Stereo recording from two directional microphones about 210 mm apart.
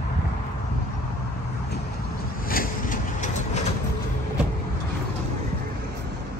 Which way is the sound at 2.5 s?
40° left (ahead or behind).